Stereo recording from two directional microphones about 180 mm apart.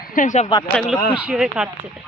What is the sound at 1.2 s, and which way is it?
Speech, 5° right (ahead or behind).